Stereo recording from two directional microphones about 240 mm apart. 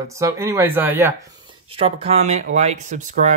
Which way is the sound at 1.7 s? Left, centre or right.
Right.